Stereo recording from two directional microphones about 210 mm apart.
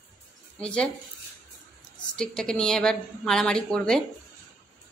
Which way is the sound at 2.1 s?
5° left (ahead or behind).